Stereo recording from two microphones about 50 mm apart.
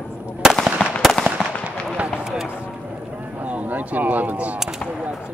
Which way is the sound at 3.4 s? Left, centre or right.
Right.